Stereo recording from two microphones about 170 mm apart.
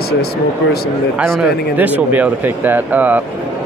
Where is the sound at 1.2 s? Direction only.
5° right (ahead or behind).